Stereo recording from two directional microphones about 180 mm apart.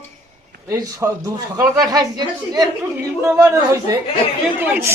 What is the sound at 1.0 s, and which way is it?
Speech, 10° right (ahead or behind).